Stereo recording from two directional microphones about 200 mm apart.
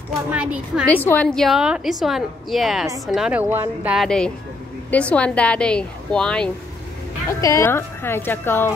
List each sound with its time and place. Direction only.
0.3 s a woman's voice: 5° right (ahead or behind)
1.0 s a woman's voice: 5° left (ahead or behind)